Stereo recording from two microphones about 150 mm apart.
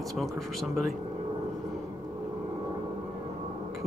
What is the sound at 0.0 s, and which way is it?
Speech, centre (ahead or behind).